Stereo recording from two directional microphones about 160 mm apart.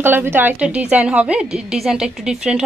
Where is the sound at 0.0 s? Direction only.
15° right (ahead or behind).